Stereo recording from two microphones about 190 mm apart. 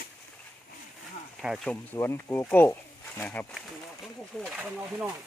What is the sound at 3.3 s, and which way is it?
Speech, 5° left (ahead or behind).